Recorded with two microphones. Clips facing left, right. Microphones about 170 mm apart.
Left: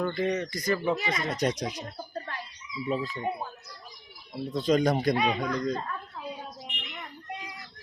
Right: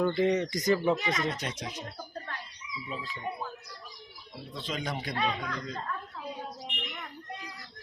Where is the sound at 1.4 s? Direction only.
40° left (ahead or behind).